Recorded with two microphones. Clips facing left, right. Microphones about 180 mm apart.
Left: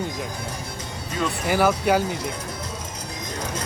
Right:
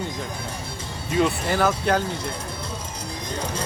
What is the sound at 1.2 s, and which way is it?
Speech, 25° right (ahead or behind).